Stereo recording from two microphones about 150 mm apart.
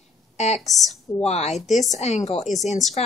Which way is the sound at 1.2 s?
45° left (ahead or behind).